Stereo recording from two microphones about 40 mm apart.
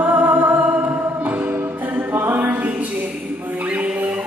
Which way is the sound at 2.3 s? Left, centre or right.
Right.